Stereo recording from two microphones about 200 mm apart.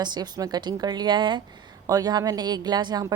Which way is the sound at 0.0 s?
20° right (ahead or behind).